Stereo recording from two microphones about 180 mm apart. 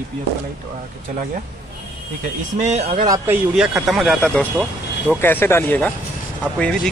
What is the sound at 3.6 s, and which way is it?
Speech, centre (ahead or behind).